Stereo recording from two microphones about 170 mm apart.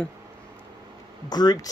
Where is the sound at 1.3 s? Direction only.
25° left (ahead or behind).